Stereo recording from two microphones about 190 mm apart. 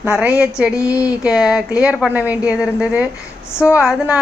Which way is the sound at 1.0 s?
5° right (ahead or behind).